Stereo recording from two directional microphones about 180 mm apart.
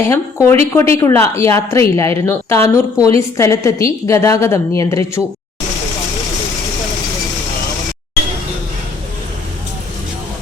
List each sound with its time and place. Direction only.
0.1 s speech: 15° left (ahead or behind)